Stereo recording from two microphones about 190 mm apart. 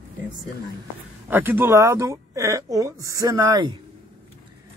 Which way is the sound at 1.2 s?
10° right (ahead or behind).